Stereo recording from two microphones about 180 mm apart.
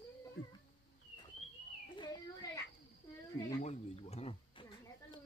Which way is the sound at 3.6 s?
35° left (ahead or behind).